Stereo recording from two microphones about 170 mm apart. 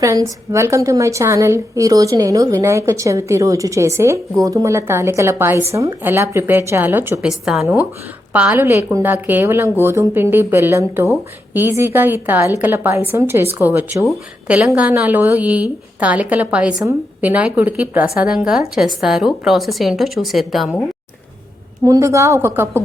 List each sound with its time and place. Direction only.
0.0 s a woman's voice: 20° right (ahead or behind)
7.3 s a woman's voice: centre (ahead or behind)
21.8 s a woman's voice: 20° right (ahead or behind)